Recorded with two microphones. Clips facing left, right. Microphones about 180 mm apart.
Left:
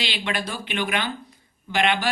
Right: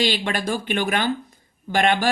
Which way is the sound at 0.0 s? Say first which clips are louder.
Right 6 dB; 45° right (ahead or behind).